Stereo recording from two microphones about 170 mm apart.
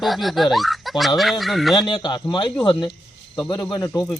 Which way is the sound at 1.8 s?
25° left (ahead or behind).